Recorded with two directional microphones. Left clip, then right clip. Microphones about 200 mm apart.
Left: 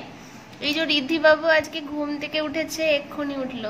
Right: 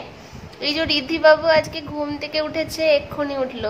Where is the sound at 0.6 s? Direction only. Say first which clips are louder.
Right 2 dB; 20° right (ahead or behind).